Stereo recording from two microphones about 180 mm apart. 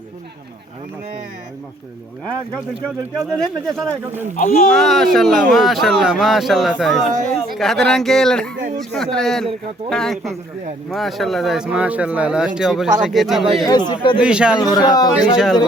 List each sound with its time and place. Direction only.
2.8 s speech: centre (ahead or behind)
4.4 s speech: 50° left (ahead or behind)
4.7 s speech: centre (ahead or behind)
7.1 s speech: 55° right (ahead or behind)
7.6 s speech: centre (ahead or behind)
13.7 s speech: 25° left (ahead or behind)
14.2 s speech: 5° right (ahead or behind)
14.6 s speech: 20° left (ahead or behind)